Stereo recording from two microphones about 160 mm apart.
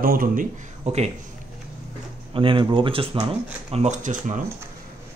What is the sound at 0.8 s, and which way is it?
Speech, 40° right (ahead or behind).